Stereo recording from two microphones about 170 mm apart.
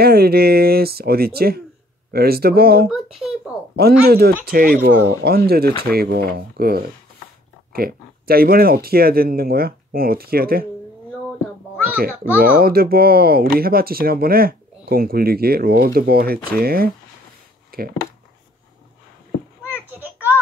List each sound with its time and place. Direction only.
0.0 s speech: 65° right (ahead or behind)
4.0 s speech: 65° right (ahead or behind)
12.0 s speech: 60° right (ahead or behind)
19.6 s children playing: 10° right (ahead or behind)